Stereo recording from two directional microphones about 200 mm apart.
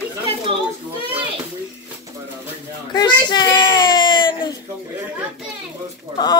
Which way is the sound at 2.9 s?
20° left (ahead or behind).